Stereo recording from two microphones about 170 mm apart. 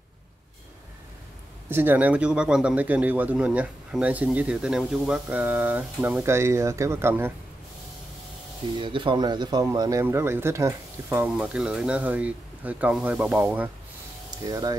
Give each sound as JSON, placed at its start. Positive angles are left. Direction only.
{"t": 1.7, "sound": "a man's voice", "side_deg": -10}
{"t": 8.7, "sound": "speech", "side_deg": -30}
{"t": 11.2, "sound": "a man's voice", "side_deg": -5}
{"t": 14.5, "sound": "speech", "side_deg": -20}